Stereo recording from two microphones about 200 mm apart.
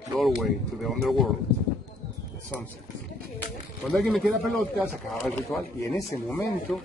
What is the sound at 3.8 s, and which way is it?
Speech, centre (ahead or behind).